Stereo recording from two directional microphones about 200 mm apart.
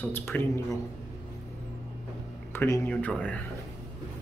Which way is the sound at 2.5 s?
10° left (ahead or behind).